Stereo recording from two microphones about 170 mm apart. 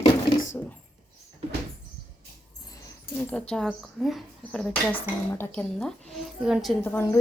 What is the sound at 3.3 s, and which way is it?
Speech, 5° left (ahead or behind).